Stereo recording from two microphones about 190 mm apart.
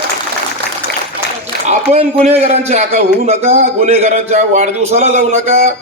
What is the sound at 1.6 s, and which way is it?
A man's voice, 35° right (ahead or behind).